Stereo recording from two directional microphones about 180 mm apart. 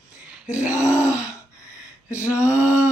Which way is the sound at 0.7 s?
15° left (ahead or behind).